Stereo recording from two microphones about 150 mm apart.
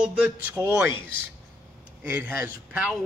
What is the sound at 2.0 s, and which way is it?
Speech, 15° right (ahead or behind).